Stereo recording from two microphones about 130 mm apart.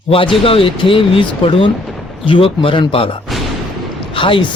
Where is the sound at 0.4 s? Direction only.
45° left (ahead or behind).